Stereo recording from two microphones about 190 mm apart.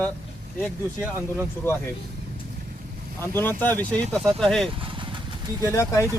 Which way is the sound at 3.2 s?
10° left (ahead or behind).